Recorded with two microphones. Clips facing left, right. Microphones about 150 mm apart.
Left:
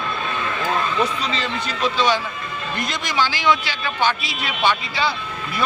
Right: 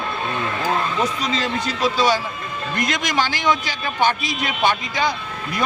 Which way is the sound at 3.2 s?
45° right (ahead or behind).